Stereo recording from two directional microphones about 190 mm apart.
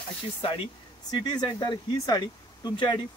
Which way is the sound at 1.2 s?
20° left (ahead or behind).